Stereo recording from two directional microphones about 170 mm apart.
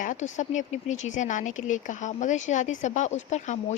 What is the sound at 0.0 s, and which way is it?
Speech, 45° left (ahead or behind).